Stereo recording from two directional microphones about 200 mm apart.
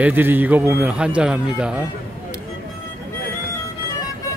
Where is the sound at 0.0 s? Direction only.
10° right (ahead or behind).